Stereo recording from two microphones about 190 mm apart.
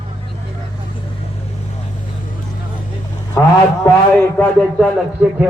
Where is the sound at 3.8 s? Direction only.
10° left (ahead or behind).